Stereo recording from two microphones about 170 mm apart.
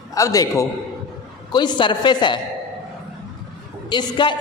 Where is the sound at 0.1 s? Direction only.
20° left (ahead or behind).